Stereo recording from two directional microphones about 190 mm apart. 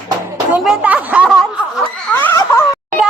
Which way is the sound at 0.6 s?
5° right (ahead or behind).